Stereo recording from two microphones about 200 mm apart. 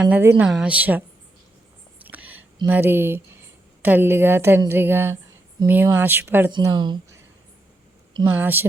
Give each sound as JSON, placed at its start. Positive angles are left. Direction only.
{"t": 0.0, "sound": "a woman's voice", "side_deg": -10}
{"t": 2.0, "sound": "a sound", "side_deg": -10}
{"t": 2.6, "sound": "a woman's voice", "side_deg": -10}
{"t": 6.5, "sound": "speech", "side_deg": -25}
{"t": 8.3, "sound": "a woman's voice", "side_deg": -10}